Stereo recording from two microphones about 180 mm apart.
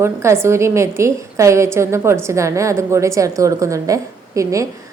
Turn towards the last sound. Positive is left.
turn(degrees=-15)  # may be behind; listen again after turning